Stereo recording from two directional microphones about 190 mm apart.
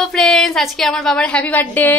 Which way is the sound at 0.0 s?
Centre (ahead or behind).